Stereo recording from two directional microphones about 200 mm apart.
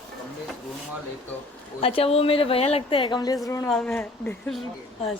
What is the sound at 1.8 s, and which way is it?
A woman's voice, 30° left (ahead or behind).